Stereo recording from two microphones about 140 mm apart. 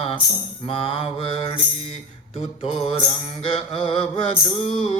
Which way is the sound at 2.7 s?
45° left (ahead or behind).